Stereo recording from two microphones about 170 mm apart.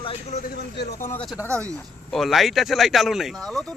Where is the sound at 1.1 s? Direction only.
5° left (ahead or behind).